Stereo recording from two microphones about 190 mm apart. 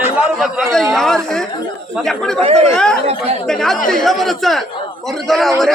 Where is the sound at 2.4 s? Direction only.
35° right (ahead or behind).